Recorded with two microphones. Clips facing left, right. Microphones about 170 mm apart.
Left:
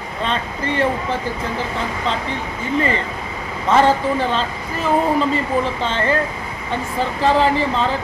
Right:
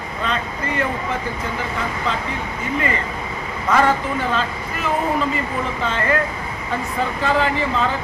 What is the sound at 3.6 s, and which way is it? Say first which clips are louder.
Speech: left 3 dB; 30° left (ahead or behind).